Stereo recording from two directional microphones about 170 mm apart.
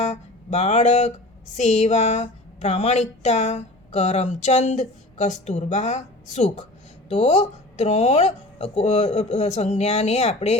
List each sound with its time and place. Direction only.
0.0 s music: 40° left (ahead or behind)
1.5 s a woman's voice: 40° left (ahead or behind)